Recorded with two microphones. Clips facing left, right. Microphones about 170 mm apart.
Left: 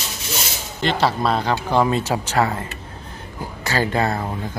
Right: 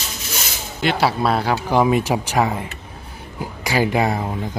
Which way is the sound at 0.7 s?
10° right (ahead or behind).